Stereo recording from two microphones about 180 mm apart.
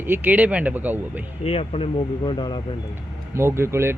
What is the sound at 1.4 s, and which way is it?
Speech, 35° left (ahead or behind).